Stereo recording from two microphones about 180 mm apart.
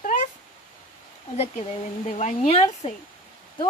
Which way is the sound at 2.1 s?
35° left (ahead or behind).